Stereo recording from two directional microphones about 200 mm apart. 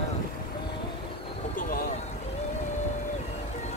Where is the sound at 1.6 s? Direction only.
45° left (ahead or behind).